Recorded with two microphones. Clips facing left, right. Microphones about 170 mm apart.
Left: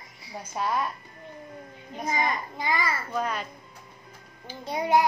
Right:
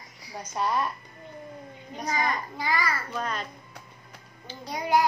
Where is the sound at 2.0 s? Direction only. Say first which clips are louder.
Left 1 dB; 20° left (ahead or behind).